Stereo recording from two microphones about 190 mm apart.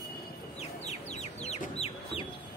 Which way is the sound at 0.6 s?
35° left (ahead or behind).